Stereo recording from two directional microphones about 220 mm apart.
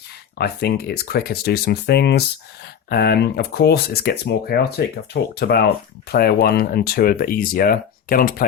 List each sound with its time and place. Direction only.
0.3 s speech: 45° left (ahead or behind)